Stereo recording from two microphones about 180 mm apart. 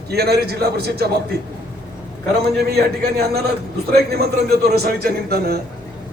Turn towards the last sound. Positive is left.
turn(degrees=-60)  # may be behind; listen again after turning